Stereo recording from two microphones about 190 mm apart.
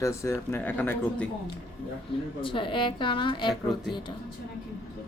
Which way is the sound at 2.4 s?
25° left (ahead or behind).